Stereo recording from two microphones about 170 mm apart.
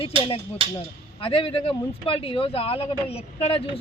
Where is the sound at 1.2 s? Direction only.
30° left (ahead or behind).